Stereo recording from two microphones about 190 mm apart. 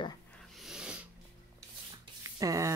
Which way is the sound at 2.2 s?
15° right (ahead or behind).